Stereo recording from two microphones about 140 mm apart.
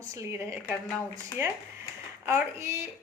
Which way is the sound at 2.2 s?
20° right (ahead or behind).